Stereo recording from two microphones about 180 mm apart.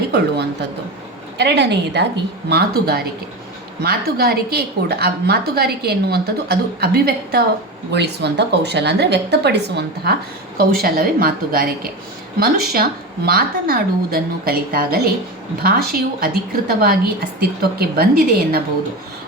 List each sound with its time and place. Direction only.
1.4 s a woman's voice: 70° right (ahead or behind)
10.6 s a woman's voice: 55° right (ahead or behind)